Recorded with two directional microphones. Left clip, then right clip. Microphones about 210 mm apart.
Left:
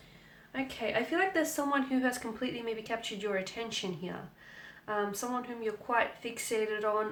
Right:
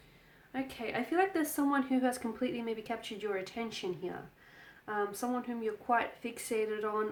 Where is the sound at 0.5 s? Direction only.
40° right (ahead or behind).